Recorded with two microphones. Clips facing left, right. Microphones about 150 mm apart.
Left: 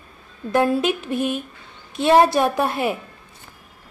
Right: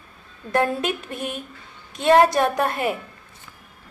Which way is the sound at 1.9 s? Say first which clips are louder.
Left 1 dB; 10° left (ahead or behind).